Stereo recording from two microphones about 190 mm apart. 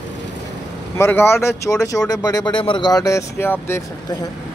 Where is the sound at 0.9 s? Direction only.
10° left (ahead or behind).